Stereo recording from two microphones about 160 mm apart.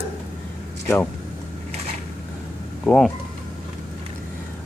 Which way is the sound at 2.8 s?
5° left (ahead or behind).